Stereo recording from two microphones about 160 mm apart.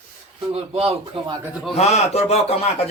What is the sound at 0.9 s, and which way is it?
Speech, 30° right (ahead or behind).